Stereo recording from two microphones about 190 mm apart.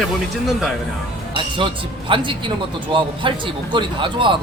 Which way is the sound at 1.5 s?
25° right (ahead or behind).